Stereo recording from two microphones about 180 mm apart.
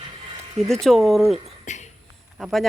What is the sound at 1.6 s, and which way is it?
Beatboxing, 40° left (ahead or behind).